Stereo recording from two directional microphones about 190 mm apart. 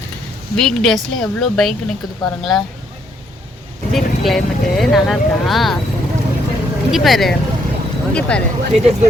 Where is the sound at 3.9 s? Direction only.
Centre (ahead or behind).